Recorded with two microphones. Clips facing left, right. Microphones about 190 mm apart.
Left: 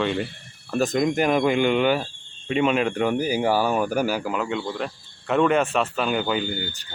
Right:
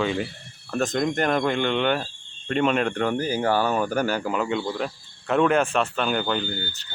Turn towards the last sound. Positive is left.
turn(degrees=10)  # may be behind; listen again after turning